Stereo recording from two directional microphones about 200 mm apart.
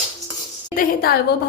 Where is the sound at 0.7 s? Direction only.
45° left (ahead or behind).